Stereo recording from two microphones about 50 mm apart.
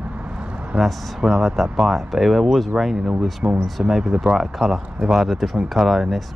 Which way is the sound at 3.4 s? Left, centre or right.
Right.